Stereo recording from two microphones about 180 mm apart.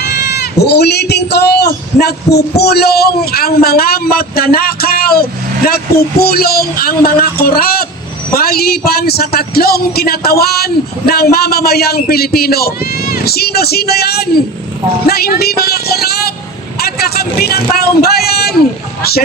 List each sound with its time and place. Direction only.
0.1 s speech: 60° left (ahead or behind)